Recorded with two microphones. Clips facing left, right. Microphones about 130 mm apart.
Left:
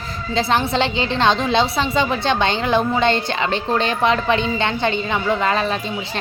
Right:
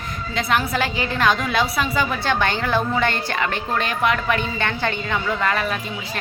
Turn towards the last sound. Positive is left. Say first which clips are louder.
# left 3 dB
turn(degrees=25)  # may be behind; listen again after turning